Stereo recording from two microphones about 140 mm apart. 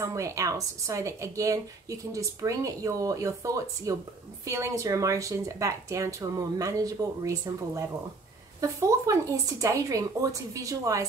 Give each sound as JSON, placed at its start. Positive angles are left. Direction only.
{"t": 0.0, "sound": "a woman's voice", "side_deg": -20}